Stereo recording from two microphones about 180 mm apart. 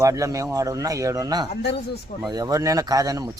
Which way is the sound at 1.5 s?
65° left (ahead or behind).